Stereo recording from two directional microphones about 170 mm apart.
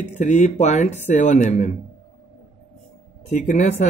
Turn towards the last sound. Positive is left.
turn(degrees=45)  # may be behind; listen again after turning